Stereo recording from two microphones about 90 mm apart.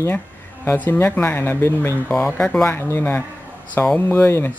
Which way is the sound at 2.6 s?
25° left (ahead or behind).